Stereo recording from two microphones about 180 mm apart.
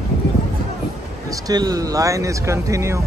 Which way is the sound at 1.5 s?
20° right (ahead or behind).